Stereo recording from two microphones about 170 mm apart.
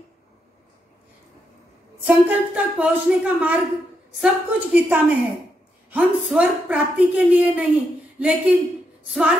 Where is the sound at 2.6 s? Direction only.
10° right (ahead or behind).